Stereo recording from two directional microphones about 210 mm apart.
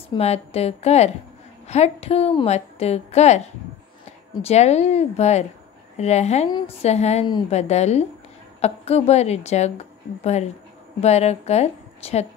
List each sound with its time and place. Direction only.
0.1 s a woman's voice: 30° left (ahead or behind)